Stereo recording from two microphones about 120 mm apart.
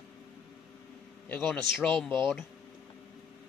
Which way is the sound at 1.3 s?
15° left (ahead or behind).